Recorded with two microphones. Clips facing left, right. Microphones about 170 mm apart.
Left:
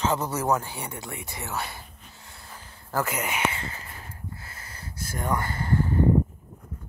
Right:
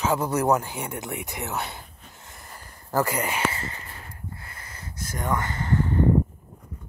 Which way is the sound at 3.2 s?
10° left (ahead or behind).